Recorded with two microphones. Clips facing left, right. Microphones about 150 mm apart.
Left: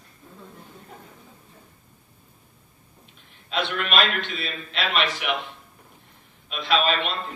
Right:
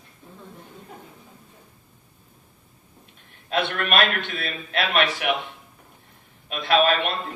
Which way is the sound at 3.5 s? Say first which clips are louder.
Right 2 dB; 55° right (ahead or behind).